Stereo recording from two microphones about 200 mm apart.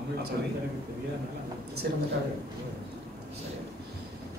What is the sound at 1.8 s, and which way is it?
Speech, 55° right (ahead or behind).